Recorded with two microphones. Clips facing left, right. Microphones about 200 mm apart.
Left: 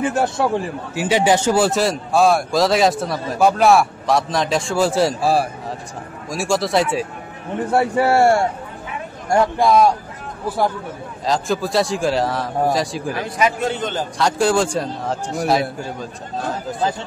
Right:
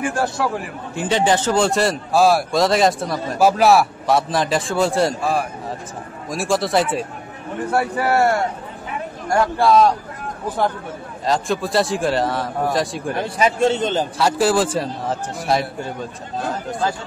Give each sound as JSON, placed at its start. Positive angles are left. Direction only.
{"t": 0.0, "sound": "a man's voice", "side_deg": 20}
{"t": 0.9, "sound": "speech", "side_deg": 10}
{"t": 5.2, "sound": "speech", "side_deg": 35}
{"t": 6.3, "sound": "speech", "side_deg": 0}
{"t": 7.7, "sound": "a man's voice", "side_deg": 25}
{"t": 11.2, "sound": "speech", "side_deg": 0}
{"t": 13.4, "sound": "a man's voice", "side_deg": -25}
{"t": 14.1, "sound": "speech", "side_deg": -5}